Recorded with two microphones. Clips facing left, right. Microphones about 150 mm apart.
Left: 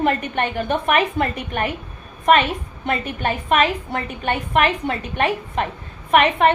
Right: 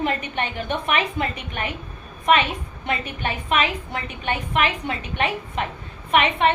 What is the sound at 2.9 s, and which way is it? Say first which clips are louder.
A woman's voice: left 4 dB; 45° left (ahead or behind).